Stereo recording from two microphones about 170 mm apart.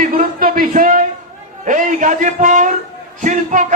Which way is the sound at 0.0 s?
55° right (ahead or behind).